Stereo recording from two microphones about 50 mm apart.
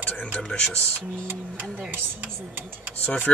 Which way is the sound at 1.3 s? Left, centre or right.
Right.